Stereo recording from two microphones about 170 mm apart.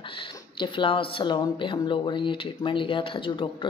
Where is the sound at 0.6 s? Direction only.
30° left (ahead or behind).